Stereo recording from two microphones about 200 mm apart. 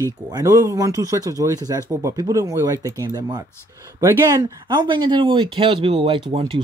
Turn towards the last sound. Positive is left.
turn(degrees=-25)  # may be behind; listen again after turning